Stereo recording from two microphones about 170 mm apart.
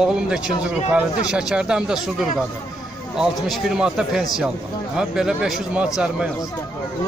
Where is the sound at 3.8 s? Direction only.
Centre (ahead or behind).